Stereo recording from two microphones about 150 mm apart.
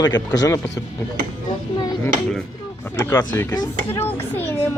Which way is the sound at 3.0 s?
15° left (ahead or behind).